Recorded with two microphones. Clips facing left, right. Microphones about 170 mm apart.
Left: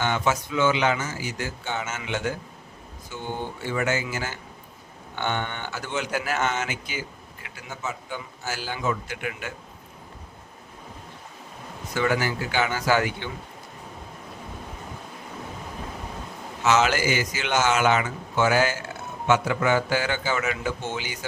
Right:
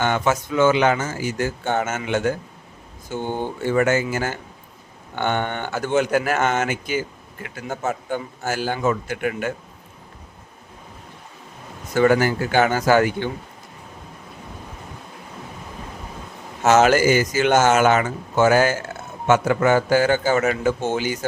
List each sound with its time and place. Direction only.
0.0 s speech: 50° right (ahead or behind)
11.9 s speech: 50° right (ahead or behind)
16.6 s speech: 50° right (ahead or behind)